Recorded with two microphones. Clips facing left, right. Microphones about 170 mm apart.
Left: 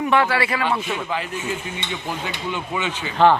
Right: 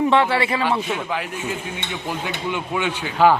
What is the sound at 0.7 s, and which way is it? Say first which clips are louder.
A man's voice: right 1 dB; 5° right (ahead or behind).